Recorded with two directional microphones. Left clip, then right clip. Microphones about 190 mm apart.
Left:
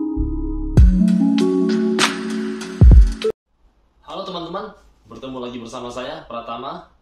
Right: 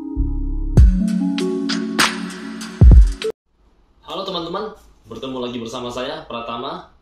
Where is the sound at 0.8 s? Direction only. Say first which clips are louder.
Left 3 dB; centre (ahead or behind).